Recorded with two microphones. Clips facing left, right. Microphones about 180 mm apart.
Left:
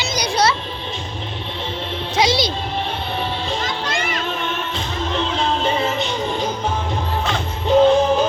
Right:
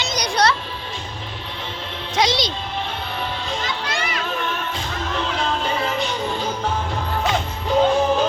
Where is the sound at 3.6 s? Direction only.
45° left (ahead or behind).